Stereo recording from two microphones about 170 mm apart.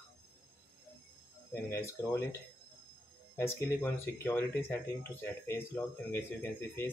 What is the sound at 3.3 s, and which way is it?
Speech, 15° left (ahead or behind).